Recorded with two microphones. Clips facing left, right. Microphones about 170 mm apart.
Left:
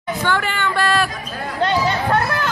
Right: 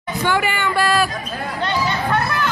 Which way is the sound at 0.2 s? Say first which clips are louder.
Right 2 dB; 10° right (ahead or behind).